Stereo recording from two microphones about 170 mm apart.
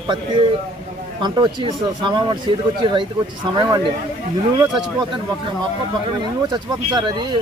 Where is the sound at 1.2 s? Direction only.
25° right (ahead or behind).